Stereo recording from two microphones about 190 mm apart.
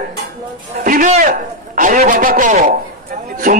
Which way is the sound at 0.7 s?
45° right (ahead or behind).